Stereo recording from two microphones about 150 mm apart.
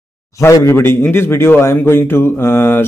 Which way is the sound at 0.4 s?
20° left (ahead or behind).